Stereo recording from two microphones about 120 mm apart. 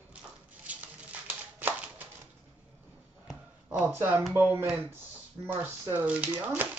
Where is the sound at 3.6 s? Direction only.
15° right (ahead or behind).